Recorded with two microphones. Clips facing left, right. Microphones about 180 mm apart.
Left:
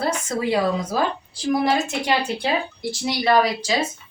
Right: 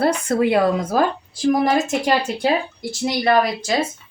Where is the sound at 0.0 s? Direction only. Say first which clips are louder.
Right 6 dB; 60° right (ahead or behind).